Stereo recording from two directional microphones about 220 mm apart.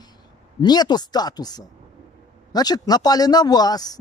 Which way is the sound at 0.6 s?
20° left (ahead or behind).